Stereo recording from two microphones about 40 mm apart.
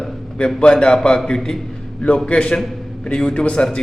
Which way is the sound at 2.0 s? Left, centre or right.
Left.